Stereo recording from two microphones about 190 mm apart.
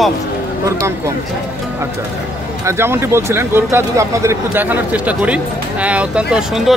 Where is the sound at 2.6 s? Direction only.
15° right (ahead or behind).